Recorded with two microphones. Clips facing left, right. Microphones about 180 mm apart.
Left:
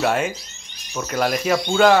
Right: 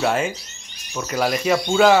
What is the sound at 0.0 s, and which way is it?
Speech, centre (ahead or behind).